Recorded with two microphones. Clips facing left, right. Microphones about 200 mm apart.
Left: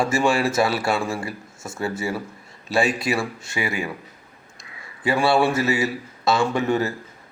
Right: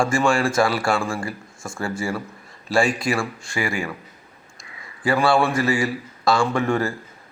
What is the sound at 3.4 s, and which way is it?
Speech, 20° left (ahead or behind).